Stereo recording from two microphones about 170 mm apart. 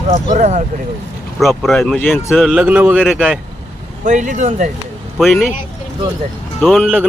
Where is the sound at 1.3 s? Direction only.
Centre (ahead or behind).